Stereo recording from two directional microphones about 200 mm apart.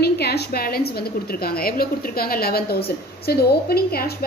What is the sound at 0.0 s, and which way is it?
A woman's voice, 55° left (ahead or behind).